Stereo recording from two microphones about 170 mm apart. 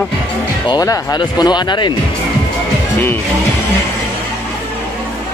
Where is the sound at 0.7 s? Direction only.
25° left (ahead or behind).